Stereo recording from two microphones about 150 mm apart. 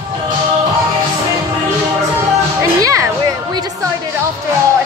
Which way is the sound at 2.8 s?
20° right (ahead or behind).